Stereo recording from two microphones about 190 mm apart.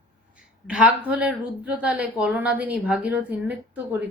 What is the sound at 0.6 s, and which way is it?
Speech, 5° right (ahead or behind).